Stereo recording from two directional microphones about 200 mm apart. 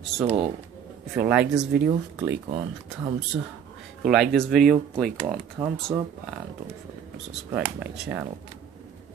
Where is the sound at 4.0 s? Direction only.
Centre (ahead or behind).